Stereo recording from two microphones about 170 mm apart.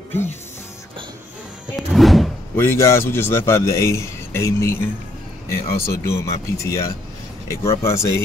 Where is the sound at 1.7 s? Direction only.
Centre (ahead or behind).